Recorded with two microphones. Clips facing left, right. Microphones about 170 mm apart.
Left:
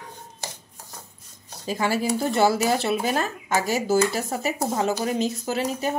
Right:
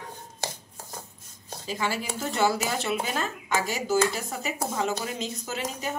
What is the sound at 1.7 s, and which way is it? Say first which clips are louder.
Speech: left 7 dB; 40° left (ahead or behind).